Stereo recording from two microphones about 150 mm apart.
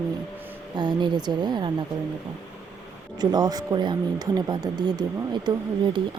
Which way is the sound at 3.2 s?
25° right (ahead or behind).